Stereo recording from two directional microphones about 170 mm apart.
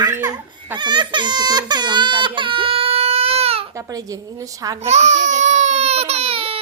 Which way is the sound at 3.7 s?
20° right (ahead or behind).